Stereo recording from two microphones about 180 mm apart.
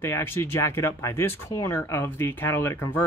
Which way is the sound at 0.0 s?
10° left (ahead or behind).